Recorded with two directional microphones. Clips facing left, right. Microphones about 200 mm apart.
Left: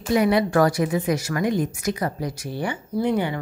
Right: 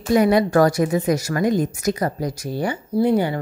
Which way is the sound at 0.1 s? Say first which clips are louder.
Right 3 dB; 45° right (ahead or behind).